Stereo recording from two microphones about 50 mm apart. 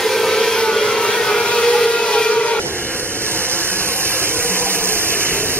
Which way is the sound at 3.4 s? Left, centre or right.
Right.